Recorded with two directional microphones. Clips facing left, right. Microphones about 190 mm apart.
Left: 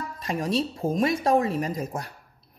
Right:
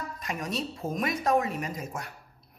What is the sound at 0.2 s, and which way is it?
A woman's voice, 30° left (ahead or behind).